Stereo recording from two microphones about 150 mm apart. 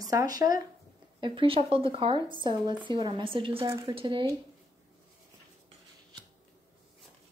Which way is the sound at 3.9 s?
35° right (ahead or behind).